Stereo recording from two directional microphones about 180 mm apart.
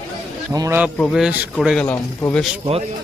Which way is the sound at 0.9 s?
Centre (ahead or behind).